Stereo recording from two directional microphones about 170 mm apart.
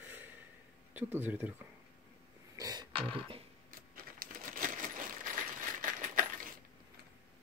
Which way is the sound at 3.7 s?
55° right (ahead or behind).